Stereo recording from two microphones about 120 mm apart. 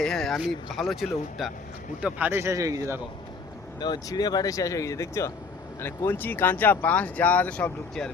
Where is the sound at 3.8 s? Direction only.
35° left (ahead or behind).